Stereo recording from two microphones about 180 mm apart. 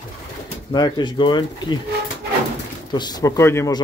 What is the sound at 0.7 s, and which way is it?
A man's voice, 25° left (ahead or behind).